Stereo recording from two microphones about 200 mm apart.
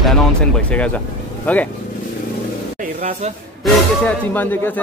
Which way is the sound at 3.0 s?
35° right (ahead or behind).